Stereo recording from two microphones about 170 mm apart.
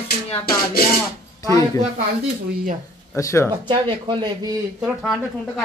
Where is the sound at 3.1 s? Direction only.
15° left (ahead or behind).